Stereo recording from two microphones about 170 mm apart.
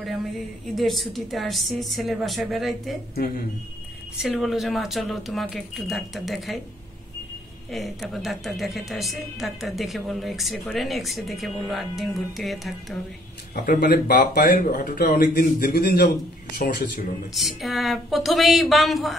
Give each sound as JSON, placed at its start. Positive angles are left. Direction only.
{"t": 0.7, "sound": "a woman's voice", "side_deg": 0}
{"t": 4.2, "sound": "a woman's voice", "side_deg": 0}
{"t": 7.7, "sound": "a woman's voice", "side_deg": 0}
{"t": 13.7, "sound": "speech", "side_deg": 65}
{"t": 17.4, "sound": "a woman's voice", "side_deg": 0}